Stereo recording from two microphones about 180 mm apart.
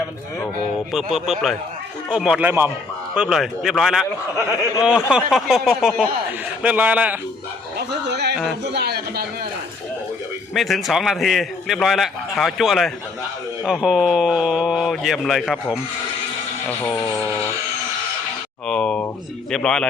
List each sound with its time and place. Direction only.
0.9 s a man's voice: centre (ahead or behind)
7.8 s a sound: 70° right (ahead or behind)
10.5 s a man's voice: centre (ahead or behind)
16.9 s speech: 15° left (ahead or behind)
18.7 s a sound: 5° left (ahead or behind)
19.5 s a man's voice: 5° left (ahead or behind)